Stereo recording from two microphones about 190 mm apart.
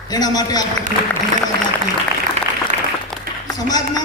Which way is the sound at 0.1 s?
20° left (ahead or behind).